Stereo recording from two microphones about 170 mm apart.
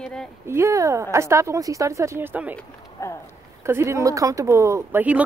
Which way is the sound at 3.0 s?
15° left (ahead or behind).